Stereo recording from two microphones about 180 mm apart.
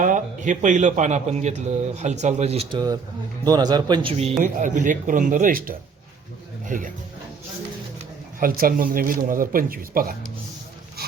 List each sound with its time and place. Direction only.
0.0 s a man's voice: 45° right (ahead or behind); by 4.3 s 25° right (ahead or behind)
4.4 s speech: 45° right (ahead or behind)
7.9 s speech: 55° right (ahead or behind)